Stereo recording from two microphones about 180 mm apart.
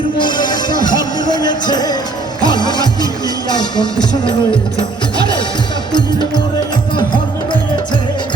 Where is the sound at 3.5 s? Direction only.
25° left (ahead or behind).